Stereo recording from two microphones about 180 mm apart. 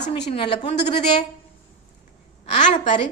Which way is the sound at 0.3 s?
30° left (ahead or behind).